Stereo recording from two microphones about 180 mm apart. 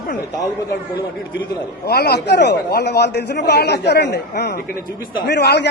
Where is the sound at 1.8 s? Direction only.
65° left (ahead or behind).